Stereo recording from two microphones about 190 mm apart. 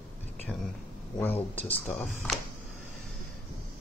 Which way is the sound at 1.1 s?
10° left (ahead or behind).